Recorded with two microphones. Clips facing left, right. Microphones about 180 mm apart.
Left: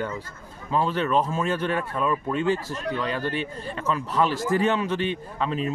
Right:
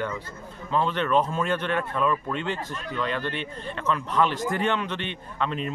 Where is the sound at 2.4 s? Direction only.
40° left (ahead or behind).